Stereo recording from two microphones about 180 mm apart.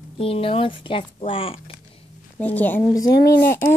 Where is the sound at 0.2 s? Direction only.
30° left (ahead or behind).